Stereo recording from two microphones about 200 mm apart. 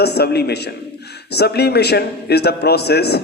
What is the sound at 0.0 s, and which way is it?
A man's voice, 55° left (ahead or behind).